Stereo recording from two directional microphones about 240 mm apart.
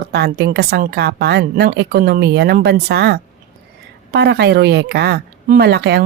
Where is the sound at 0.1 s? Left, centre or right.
Right.